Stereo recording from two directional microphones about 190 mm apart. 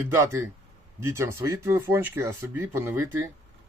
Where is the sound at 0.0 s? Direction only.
15° right (ahead or behind).